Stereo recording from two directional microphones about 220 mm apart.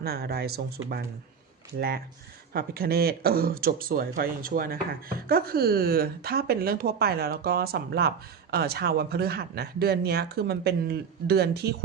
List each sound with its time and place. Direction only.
0.0 s speech: 45° right (ahead or behind)
2.5 s speech: 45° right (ahead or behind)